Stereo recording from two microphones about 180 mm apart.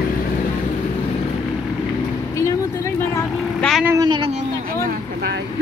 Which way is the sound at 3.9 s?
20° right (ahead or behind).